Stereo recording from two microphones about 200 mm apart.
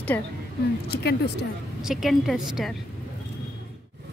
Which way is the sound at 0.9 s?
55° left (ahead or behind).